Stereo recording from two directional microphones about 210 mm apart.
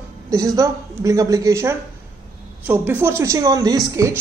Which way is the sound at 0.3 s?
15° right (ahead or behind).